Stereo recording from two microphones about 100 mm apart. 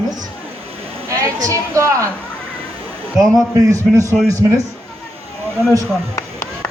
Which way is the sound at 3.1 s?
Centre (ahead or behind).